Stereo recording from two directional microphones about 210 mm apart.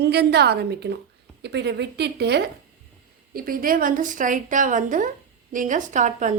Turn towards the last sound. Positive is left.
turn(degrees=-35)  # may be behind; listen again after turning